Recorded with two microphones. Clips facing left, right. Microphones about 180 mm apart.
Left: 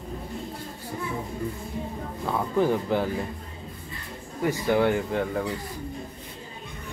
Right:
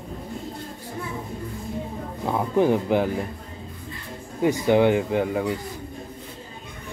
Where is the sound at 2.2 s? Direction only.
15° right (ahead or behind).